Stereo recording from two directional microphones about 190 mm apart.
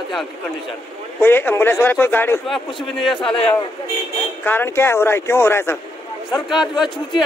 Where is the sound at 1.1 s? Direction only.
10° left (ahead or behind).